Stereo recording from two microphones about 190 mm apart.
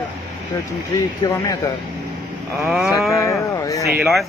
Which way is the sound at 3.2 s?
15° left (ahead or behind).